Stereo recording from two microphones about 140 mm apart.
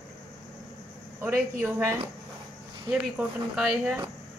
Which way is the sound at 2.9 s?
5° right (ahead or behind).